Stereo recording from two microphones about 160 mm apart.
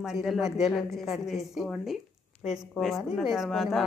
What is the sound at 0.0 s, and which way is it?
Speech, centre (ahead or behind).